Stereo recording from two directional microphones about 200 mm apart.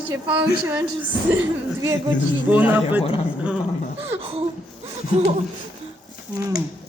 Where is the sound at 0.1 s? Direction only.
20° right (ahead or behind).